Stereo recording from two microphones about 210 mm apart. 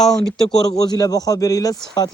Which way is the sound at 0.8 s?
15° left (ahead or behind).